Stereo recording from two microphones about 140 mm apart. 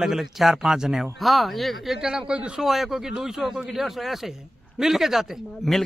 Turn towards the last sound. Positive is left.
turn(degrees=0)  # may be behind; listen again after turning